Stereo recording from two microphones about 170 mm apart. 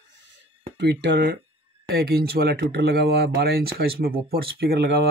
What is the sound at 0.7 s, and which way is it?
Speech, 90° right.